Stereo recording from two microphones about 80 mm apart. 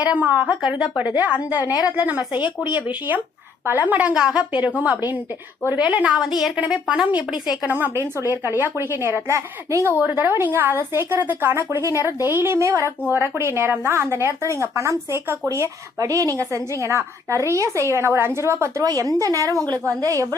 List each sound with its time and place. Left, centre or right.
0.0 s speech: centre
5.8 s a woman's voice: centre
8.2 s a woman's voice: right
10.0 s a woman's voice: right
18.9 s a woman's voice: right